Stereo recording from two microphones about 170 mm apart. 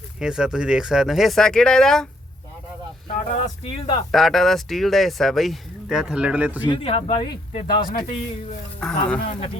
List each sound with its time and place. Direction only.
0.2 s speech: 5° right (ahead or behind)
3.1 s speech: 50° left (ahead or behind)
3.8 s speech: 35° left (ahead or behind)
4.1 s speech: centre (ahead or behind)
6.7 s speech: 35° left (ahead or behind)
8.8 s speech: 5° left (ahead or behind)